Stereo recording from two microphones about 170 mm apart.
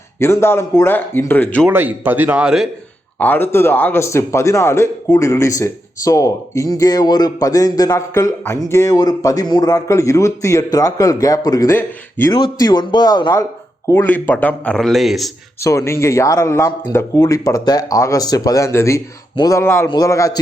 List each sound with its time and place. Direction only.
0.2 s speech: 15° left (ahead or behind)
1.6 s a man's voice: 10° right (ahead or behind)
3.2 s a man's voice: 10° left (ahead or behind)
13.8 s speech: 15° left (ahead or behind)
15.6 s a man's voice: 15° left (ahead or behind)